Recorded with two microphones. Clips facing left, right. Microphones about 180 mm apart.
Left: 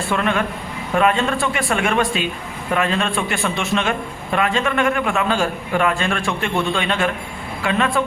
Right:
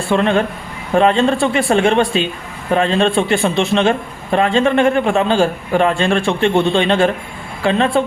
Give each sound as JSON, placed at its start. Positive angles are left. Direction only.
{"t": 0.1, "sound": "a man's voice", "side_deg": -30}